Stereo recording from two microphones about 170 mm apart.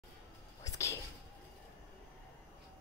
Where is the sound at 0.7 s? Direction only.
15° left (ahead or behind).